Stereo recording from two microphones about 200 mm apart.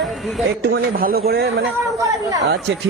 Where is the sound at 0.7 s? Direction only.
50° right (ahead or behind).